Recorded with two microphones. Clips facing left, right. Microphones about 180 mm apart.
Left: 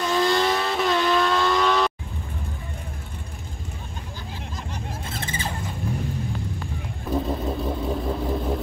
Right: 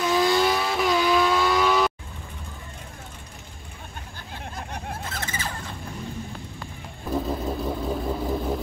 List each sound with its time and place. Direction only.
0.0 s vehicle: 5° right (ahead or behind)
5.1 s a sound: 25° left (ahead or behind)
7.1 s vehicle: centre (ahead or behind)